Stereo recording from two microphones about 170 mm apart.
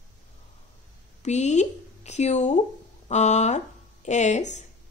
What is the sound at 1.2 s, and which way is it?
A woman's voice, 45° left (ahead or behind).